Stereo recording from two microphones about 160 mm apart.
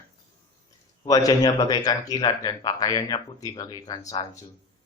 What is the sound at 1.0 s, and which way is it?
Speech, 25° left (ahead or behind).